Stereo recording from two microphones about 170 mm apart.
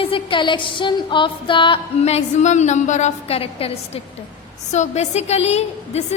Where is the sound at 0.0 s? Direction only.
30° left (ahead or behind).